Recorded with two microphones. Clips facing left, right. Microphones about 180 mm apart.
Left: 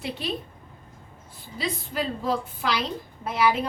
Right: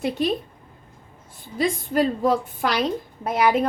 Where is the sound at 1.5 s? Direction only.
50° right (ahead or behind).